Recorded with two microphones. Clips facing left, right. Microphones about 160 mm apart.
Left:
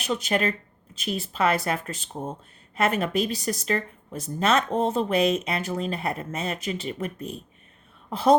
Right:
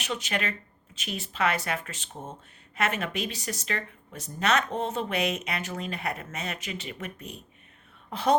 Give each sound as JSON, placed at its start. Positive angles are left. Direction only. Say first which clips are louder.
{"t": 0.1, "sound": "speech", "louder": "left 7 dB", "side_deg": 35}